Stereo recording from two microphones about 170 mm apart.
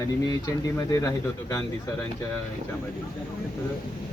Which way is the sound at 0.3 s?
20° left (ahead or behind).